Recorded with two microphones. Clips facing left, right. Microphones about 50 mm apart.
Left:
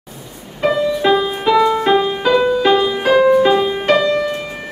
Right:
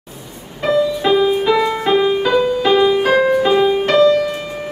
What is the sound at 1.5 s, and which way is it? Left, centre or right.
Music, centre.